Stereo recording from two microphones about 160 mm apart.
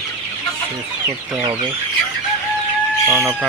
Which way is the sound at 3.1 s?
Centre (ahead or behind).